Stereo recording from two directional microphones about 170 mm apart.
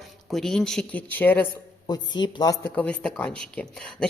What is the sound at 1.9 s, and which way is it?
Speech, 25° left (ahead or behind).